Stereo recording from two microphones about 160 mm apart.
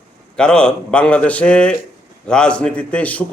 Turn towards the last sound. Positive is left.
turn(degrees=10)  # may be behind; listen again after turning